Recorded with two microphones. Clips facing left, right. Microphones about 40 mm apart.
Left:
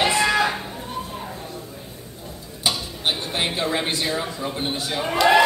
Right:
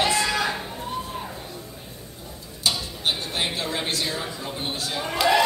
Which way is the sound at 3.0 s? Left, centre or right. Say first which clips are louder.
Left 2 dB; centre.